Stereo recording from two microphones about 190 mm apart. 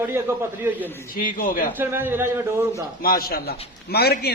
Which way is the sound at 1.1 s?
45° left (ahead or behind).